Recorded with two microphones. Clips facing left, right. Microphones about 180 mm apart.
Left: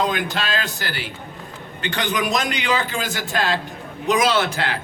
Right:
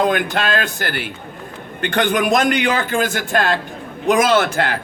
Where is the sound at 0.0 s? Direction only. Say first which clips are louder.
Right 5 dB; 55° right (ahead or behind).